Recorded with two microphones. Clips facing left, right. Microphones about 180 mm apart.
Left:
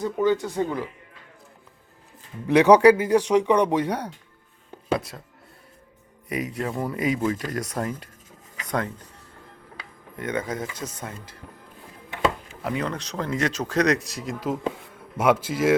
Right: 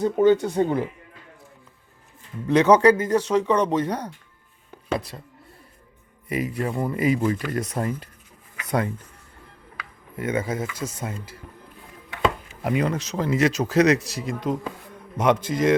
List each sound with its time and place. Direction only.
0.0 s speech: 25° right (ahead or behind)
2.5 s speech: 15° left (ahead or behind)
4.9 s speech: centre (ahead or behind)
6.2 s speech: centre (ahead or behind)
10.2 s speech: 10° right (ahead or behind)
12.6 s speech: 15° right (ahead or behind); by 15.7 s 5° left (ahead or behind)